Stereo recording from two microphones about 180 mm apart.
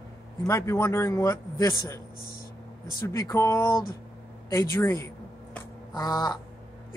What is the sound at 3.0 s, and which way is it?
Speech, 15° left (ahead or behind).